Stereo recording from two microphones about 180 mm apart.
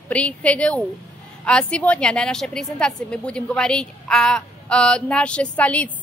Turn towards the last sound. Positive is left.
turn(degrees=5)  # may be behind; listen again after turning